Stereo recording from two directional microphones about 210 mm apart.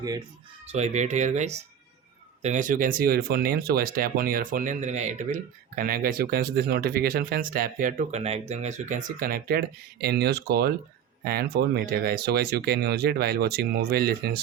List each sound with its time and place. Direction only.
0.6 s speech: 30° right (ahead or behind); by 14.4 s 50° right (ahead or behind)